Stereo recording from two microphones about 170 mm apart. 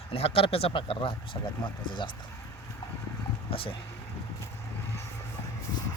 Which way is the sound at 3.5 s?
30° left (ahead or behind).